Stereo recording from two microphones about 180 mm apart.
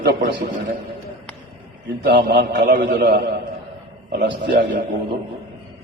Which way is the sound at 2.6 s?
55° right (ahead or behind).